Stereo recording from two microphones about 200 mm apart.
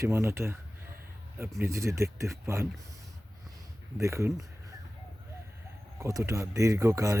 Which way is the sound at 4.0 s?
15° right (ahead or behind).